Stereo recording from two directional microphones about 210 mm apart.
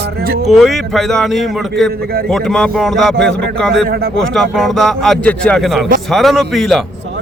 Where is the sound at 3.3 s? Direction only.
55° right (ahead or behind).